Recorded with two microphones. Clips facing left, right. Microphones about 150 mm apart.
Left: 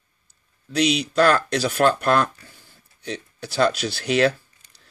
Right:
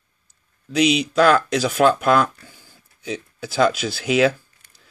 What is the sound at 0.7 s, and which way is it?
Speech, 5° right (ahead or behind).